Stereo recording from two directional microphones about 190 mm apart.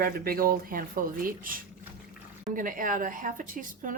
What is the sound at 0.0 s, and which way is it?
A woman's voice, 50° right (ahead or behind).